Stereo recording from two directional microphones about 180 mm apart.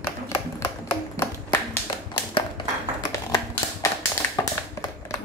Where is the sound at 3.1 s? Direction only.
15° left (ahead or behind).